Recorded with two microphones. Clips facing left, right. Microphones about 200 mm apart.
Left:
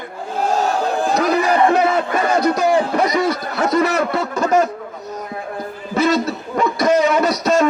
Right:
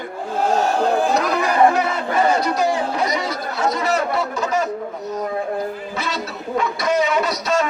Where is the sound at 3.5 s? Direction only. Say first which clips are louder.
Left 3 dB; 55° left (ahead or behind).